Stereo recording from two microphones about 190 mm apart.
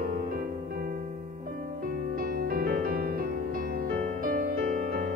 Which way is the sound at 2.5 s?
55° right (ahead or behind).